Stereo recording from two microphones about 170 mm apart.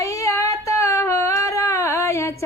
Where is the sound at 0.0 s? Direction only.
20° left (ahead or behind).